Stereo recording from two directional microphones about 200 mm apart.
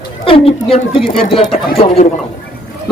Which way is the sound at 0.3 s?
30° left (ahead or behind).